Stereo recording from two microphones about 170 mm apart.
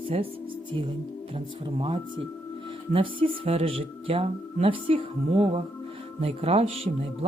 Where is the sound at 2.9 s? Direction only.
35° right (ahead or behind).